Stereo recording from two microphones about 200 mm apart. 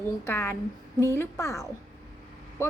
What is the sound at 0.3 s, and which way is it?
A woman's voice, 10° left (ahead or behind).